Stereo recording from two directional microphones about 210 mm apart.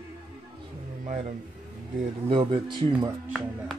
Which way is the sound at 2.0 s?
25° right (ahead or behind).